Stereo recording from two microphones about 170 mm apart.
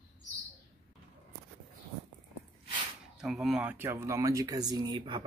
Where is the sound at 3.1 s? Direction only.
Centre (ahead or behind).